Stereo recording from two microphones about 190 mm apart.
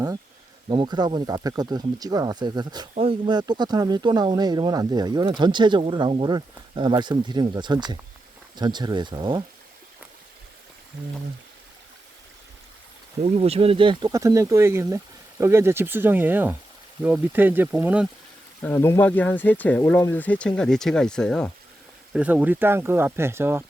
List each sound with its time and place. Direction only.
0.7 s speech: 25° right (ahead or behind)
13.2 s speech: 35° right (ahead or behind); by 18.1 s 5° right (ahead or behind)
18.6 s speech: 10° left (ahead or behind)
22.1 s speech: 5° right (ahead or behind)